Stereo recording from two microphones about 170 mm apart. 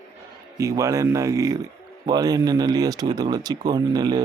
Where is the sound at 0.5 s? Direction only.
20° right (ahead or behind).